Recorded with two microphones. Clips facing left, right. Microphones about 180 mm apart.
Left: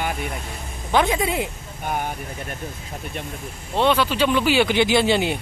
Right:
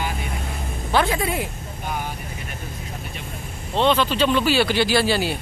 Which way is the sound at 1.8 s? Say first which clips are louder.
Left 3 dB; 50° left (ahead or behind).